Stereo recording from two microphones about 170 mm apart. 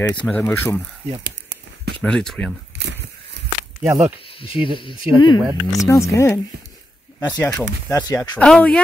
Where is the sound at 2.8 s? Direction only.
90° right.